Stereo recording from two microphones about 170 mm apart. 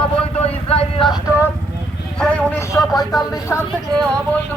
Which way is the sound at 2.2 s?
5° left (ahead or behind).